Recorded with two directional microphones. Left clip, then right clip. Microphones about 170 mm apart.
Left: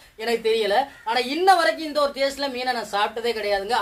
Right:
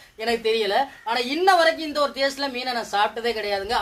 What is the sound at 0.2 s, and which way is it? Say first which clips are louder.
A woman's voice: left 1 dB; 25° right (ahead or behind).